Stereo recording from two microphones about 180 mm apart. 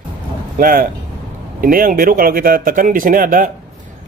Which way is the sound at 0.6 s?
50° right (ahead or behind).